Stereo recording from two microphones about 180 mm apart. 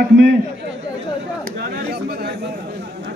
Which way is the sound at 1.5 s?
60° right (ahead or behind).